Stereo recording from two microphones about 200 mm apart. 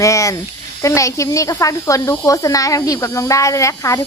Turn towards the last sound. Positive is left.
turn(degrees=15)  # may be behind; listen again after turning